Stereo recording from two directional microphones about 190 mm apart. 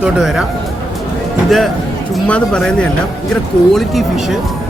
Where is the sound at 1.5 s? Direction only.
Centre (ahead or behind).